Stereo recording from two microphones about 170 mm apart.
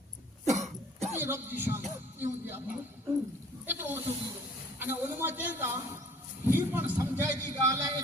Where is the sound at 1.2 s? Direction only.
10° right (ahead or behind).